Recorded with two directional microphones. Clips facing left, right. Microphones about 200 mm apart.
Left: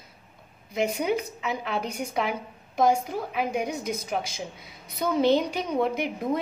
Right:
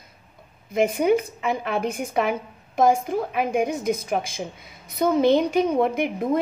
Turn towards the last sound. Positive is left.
turn(degrees=-50)  # may be behind; listen again after turning